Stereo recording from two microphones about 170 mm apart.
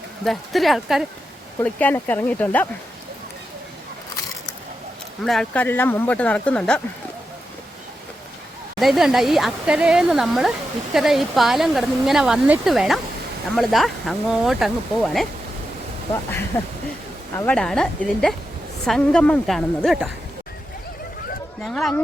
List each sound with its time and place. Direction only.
0.3 s speech: centre (ahead or behind)
1.5 s speech: 10° left (ahead or behind)
5.2 s speech: centre (ahead or behind)
8.8 s speech: centre (ahead or behind)
17.3 s speech: 5° left (ahead or behind)
21.6 s speech: centre (ahead or behind)